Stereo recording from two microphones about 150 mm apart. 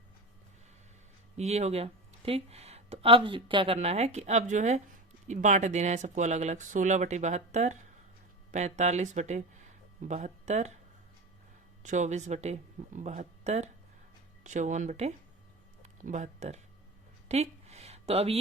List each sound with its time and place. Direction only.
1.4 s speech: 45° right (ahead or behind)
3.8 s speech: 45° right (ahead or behind)
11.8 s speech: 55° right (ahead or behind)
15.8 s a sound: 55° right (ahead or behind)